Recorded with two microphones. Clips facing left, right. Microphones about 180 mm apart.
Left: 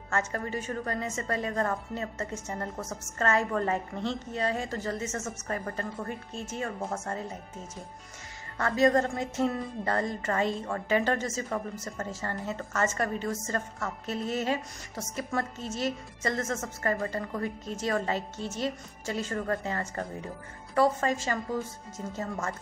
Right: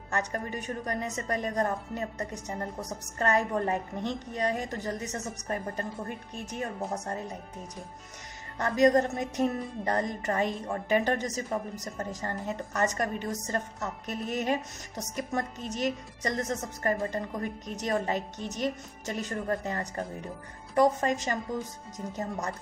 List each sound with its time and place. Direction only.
0.1 s a woman's voice: 15° right (ahead or behind)
8.5 s a woman's voice: 20° right (ahead or behind)